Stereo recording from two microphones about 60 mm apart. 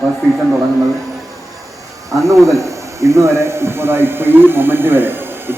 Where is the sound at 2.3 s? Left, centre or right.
Right.